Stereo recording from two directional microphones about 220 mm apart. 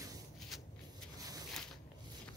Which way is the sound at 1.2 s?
15° right (ahead or behind).